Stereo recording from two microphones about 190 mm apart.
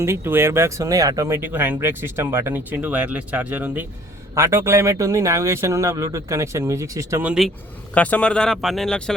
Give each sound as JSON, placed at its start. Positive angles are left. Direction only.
{"t": 0.0, "sound": "speech", "side_deg": -15}
{"t": 7.9, "sound": "speech", "side_deg": 5}